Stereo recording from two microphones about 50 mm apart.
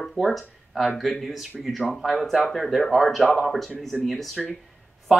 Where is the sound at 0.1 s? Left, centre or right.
Centre.